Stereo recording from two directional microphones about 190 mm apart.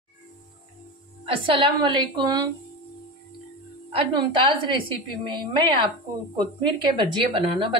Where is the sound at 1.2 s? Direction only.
30° right (ahead or behind).